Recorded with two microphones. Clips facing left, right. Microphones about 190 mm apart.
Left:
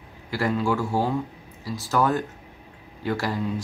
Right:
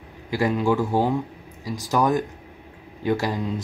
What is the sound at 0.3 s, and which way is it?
Speech, 15° right (ahead or behind).